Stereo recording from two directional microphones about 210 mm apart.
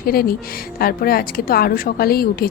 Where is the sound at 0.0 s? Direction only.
45° left (ahead or behind).